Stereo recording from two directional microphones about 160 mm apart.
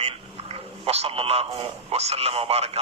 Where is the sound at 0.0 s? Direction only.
40° right (ahead or behind).